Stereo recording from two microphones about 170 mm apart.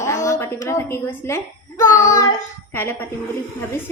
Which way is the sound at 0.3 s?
20° left (ahead or behind).